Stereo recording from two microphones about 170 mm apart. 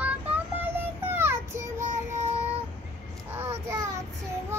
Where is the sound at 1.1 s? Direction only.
15° right (ahead or behind).